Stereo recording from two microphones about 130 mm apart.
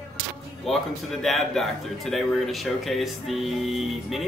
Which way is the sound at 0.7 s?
Centre (ahead or behind).